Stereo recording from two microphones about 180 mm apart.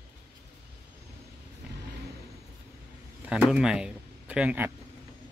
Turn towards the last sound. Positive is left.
turn(degrees=-10)  # may be behind; listen again after turning